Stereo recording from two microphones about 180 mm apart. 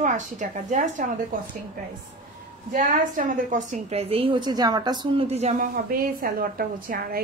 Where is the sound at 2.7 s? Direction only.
50° right (ahead or behind).